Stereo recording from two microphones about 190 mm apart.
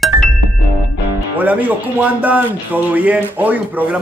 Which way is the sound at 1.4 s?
10° right (ahead or behind).